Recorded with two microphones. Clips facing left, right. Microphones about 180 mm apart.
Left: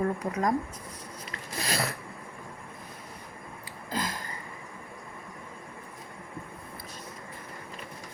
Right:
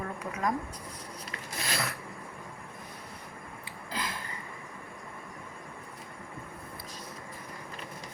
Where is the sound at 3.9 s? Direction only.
40° left (ahead or behind).